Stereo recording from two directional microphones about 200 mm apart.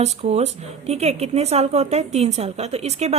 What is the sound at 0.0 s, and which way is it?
A woman's voice, 35° right (ahead or behind).